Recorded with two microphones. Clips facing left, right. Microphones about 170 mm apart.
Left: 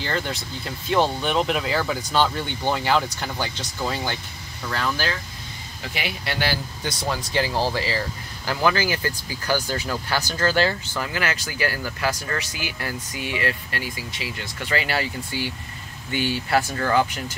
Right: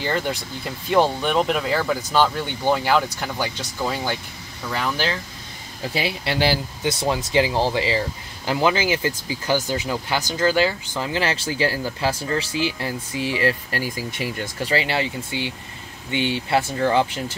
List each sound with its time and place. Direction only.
0.0 s speech: 10° right (ahead or behind)
5.9 s speech: 30° right (ahead or behind); by 11.0 s 10° right (ahead or behind)
11.0 s speech: 25° right (ahead or behind); by 14.5 s 50° right (ahead or behind)
14.6 s speech: 30° right (ahead or behind)